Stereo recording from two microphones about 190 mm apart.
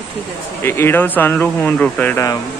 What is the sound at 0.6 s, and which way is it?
Speech, 10° left (ahead or behind).